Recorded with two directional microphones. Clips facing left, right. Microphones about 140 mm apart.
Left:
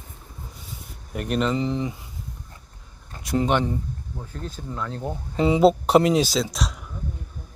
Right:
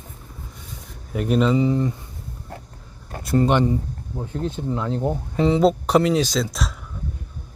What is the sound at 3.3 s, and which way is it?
Speech, 5° left (ahead or behind).